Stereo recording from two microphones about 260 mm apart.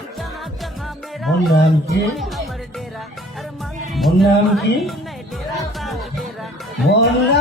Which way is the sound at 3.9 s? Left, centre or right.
Centre.